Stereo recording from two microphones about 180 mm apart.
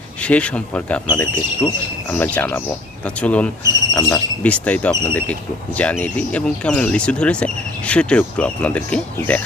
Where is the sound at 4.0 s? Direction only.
20° left (ahead or behind).